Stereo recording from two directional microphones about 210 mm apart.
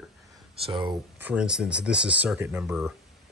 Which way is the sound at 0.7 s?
20° right (ahead or behind).